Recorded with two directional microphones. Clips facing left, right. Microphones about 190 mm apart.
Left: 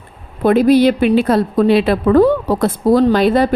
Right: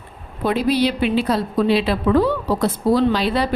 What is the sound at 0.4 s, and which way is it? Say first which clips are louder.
Speech: left 8 dB; 50° left (ahead or behind).